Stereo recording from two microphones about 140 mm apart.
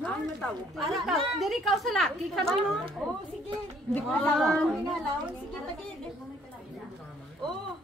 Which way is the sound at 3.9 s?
5° left (ahead or behind).